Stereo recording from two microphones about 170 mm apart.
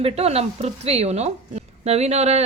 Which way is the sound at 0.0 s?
35° right (ahead or behind).